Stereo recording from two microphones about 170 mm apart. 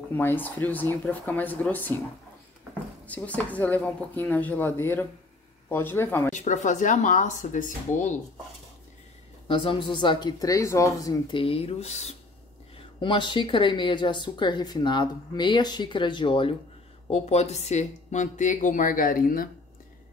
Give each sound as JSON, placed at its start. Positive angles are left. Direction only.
{"t": 0.1, "sound": "speech", "side_deg": 10}
{"t": 3.1, "sound": "speech", "side_deg": 10}
{"t": 6.3, "sound": "speech", "side_deg": 45}
{"t": 9.5, "sound": "speech", "side_deg": 30}
{"t": 12.7, "sound": "speech", "side_deg": 30}